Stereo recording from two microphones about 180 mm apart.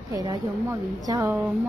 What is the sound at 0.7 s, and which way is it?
Speech, 15° right (ahead or behind).